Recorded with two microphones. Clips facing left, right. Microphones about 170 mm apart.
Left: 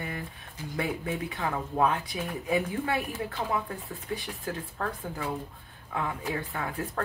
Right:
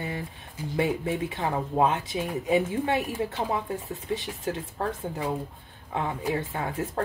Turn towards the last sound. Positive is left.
turn(degrees=-25)  # may be behind; listen again after turning